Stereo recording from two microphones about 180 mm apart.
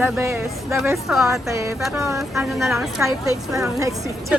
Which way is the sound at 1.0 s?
Centre (ahead or behind).